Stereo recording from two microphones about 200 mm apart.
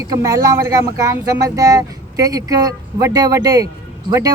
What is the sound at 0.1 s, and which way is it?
Speech, 15° right (ahead or behind).